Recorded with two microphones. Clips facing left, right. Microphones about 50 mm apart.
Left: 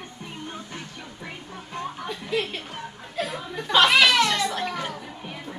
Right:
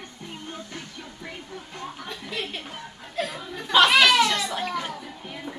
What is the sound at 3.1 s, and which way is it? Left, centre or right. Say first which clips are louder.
Children playing: left 1 dB; centre.